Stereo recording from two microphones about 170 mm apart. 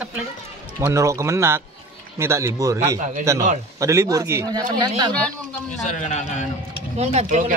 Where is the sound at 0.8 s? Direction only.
15° right (ahead or behind).